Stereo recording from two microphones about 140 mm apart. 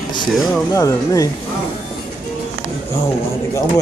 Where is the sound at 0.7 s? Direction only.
25° left (ahead or behind).